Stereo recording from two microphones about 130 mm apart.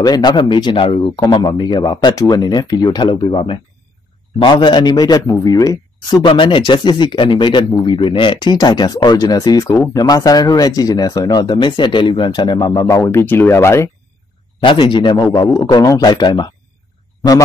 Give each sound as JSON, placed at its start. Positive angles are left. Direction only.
{"t": 0.0, "sound": "speech", "side_deg": 30}
{"t": 12.8, "sound": "speech", "side_deg": 20}
{"t": 14.6, "sound": "speech", "side_deg": 40}